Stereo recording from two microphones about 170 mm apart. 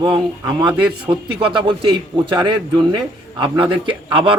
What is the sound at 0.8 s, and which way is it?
Speech, 5° right (ahead or behind).